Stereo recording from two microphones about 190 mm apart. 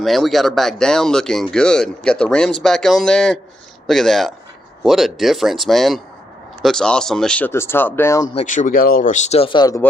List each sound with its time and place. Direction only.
0.0 s speech: centre (ahead or behind)
8.4 s speech: 40° left (ahead or behind); by 9.8 s 20° left (ahead or behind)